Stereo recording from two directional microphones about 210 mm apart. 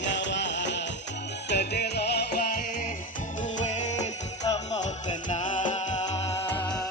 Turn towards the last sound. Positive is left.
turn(degrees=10)  # may be behind; listen again after turning